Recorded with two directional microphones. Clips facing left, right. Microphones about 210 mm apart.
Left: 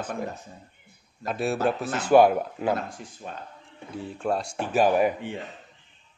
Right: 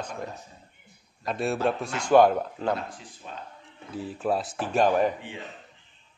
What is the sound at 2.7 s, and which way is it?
Speech, 45° left (ahead or behind).